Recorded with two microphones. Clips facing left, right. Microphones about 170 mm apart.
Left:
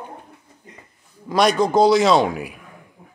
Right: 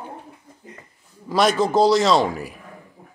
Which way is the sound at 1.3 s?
5° right (ahead or behind).